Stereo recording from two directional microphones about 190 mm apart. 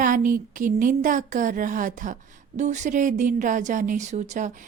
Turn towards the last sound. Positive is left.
turn(degrees=-40)  # may be behind; listen again after turning